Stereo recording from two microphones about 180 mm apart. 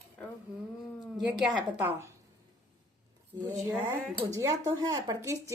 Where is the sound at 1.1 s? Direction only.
Centre (ahead or behind).